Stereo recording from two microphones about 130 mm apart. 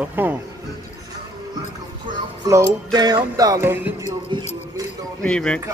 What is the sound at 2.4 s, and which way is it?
Music, 30° right (ahead or behind).